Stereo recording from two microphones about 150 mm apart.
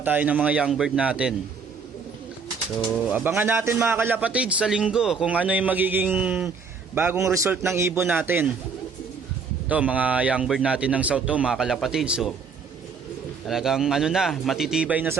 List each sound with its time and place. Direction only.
0.0 s a man's voice: 10° right (ahead or behind)
3.1 s a man's voice: 10° right (ahead or behind)
9.6 s a man's voice: 10° right (ahead or behind)
13.5 s a man's voice: 5° right (ahead or behind)